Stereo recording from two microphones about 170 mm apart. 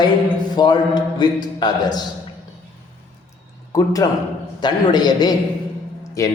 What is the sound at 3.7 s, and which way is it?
A man's voice, 20° left (ahead or behind).